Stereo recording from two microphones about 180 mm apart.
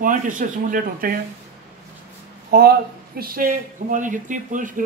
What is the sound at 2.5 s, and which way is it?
Speech, 60° right (ahead or behind).